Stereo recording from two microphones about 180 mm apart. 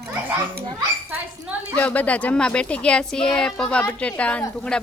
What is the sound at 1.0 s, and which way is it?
Speech, 10° right (ahead or behind).